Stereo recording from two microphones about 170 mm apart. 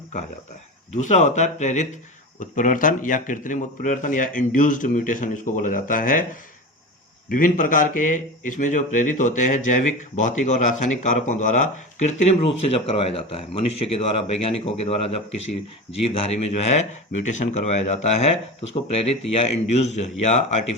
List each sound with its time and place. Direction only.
0.9 s a man's voice: 45° left (ahead or behind)
7.3 s a man's voice: 55° left (ahead or behind)